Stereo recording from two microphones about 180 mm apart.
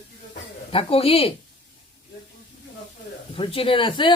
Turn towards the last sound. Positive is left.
turn(degrees=25)  # may be behind; listen again after turning